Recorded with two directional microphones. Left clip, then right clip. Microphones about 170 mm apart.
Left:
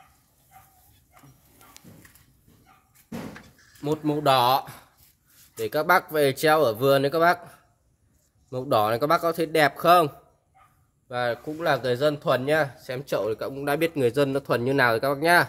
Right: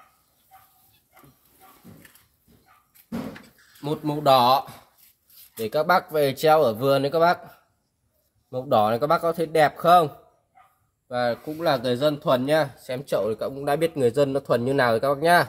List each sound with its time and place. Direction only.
3.8 s speech: 20° left (ahead or behind); by 10.1 s 40° left (ahead or behind)
11.1 s speech: 30° left (ahead or behind); by 15.4 s 10° left (ahead or behind)